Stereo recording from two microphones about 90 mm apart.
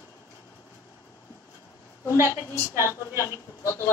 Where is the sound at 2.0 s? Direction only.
35° left (ahead or behind).